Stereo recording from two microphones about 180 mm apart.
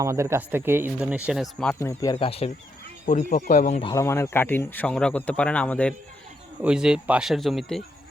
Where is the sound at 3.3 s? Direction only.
45° left (ahead or behind).